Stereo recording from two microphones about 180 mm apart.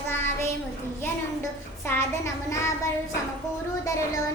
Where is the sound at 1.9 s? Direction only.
15° left (ahead or behind).